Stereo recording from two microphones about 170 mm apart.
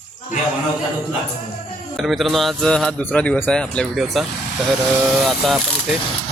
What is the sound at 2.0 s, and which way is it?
Speech, centre (ahead or behind).